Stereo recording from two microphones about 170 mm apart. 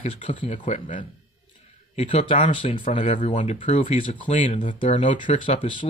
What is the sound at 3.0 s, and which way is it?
Speech, 45° left (ahead or behind).